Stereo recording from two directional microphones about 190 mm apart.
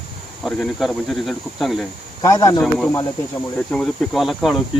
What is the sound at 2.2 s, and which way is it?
Speech, 20° left (ahead or behind).